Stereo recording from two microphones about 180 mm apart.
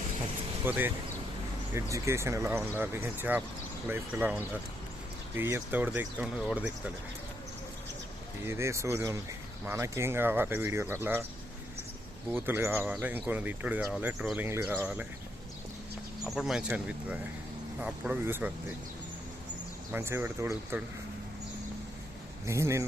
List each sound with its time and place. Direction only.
0.6 s speech: 10° right (ahead or behind)
8.4 s speech: 15° right (ahead or behind)
12.3 s speech: 10° right (ahead or behind)
16.3 s speech: centre (ahead or behind)
19.9 s speech: 10° right (ahead or behind)
22.4 s speech: 15° right (ahead or behind)